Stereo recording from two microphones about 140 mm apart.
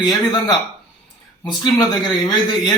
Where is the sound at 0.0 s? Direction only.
30° left (ahead or behind).